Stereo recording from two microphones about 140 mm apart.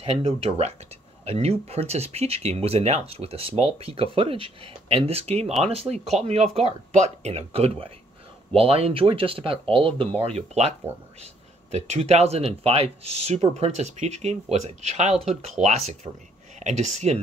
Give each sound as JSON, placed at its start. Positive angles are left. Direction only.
{"t": 0.0, "sound": "speech", "side_deg": -45}
{"t": 11.7, "sound": "speech", "side_deg": -50}